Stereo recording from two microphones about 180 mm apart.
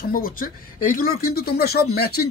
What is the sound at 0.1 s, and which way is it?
Speech, 50° left (ahead or behind).